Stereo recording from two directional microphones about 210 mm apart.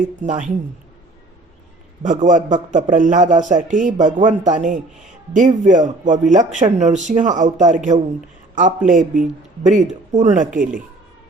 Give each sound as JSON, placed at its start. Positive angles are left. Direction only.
{"t": 0.2, "sound": "speech", "side_deg": -35}
{"t": 2.0, "sound": "speech", "side_deg": -35}